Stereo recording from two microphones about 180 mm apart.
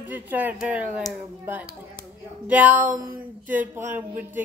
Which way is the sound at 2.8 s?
50° right (ahead or behind).